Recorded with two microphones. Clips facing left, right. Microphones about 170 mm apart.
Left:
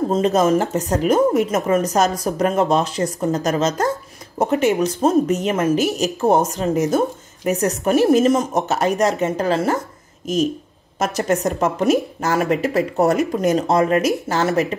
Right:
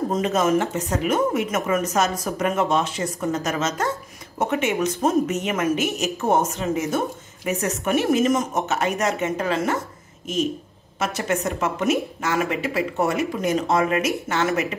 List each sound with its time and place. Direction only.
0.1 s speech: 35° left (ahead or behind)